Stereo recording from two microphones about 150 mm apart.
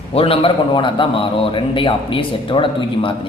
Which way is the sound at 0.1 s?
40° left (ahead or behind).